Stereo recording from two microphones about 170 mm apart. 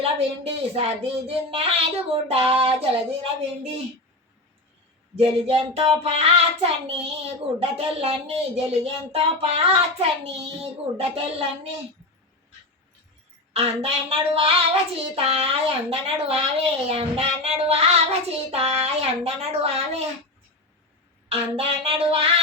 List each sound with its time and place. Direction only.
0.0 s child singing: 35° right (ahead or behind)
5.1 s child singing: 35° right (ahead or behind)
13.5 s child singing: 35° right (ahead or behind)
21.2 s child singing: 35° right (ahead or behind)